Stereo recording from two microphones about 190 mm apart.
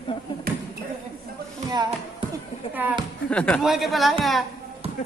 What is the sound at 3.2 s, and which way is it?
Speech, 5° left (ahead or behind).